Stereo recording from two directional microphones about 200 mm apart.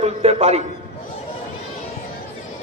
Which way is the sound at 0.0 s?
30° right (ahead or behind).